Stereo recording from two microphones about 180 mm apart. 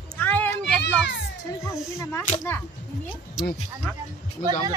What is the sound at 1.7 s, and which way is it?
Speech, 15° left (ahead or behind).